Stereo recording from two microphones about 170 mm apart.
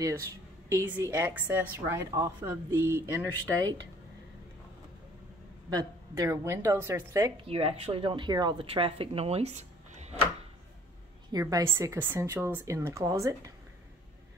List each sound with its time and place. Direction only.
0.0 s a woman's voice: 15° right (ahead or behind)
5.7 s a woman's voice: 20° right (ahead or behind)
7.4 s speech: 35° right (ahead or behind)
11.3 s a woman's voice: 20° right (ahead or behind)